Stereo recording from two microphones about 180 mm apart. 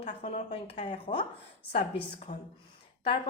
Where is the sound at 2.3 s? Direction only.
40° left (ahead or behind).